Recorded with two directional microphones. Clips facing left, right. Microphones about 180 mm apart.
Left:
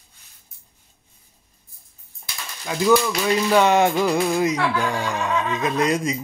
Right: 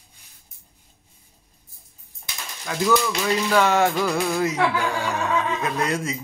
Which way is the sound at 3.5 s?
20° left (ahead or behind).